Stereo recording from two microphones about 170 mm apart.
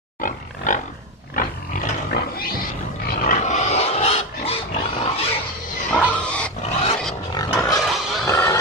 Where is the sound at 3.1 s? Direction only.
45° left (ahead or behind).